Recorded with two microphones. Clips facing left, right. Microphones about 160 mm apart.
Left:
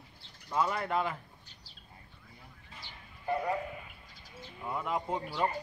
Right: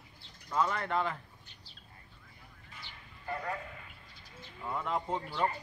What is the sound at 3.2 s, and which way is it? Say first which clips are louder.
Speech: left 6 dB; 15° left (ahead or behind).